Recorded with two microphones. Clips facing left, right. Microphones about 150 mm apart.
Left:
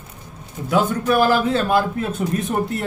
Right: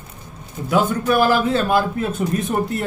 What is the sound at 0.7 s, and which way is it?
Speech, 5° right (ahead or behind).